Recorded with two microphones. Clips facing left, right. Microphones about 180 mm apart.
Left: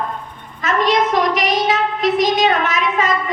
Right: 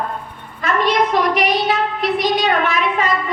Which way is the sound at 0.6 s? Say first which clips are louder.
Left 1 dB; 45° left (ahead or behind).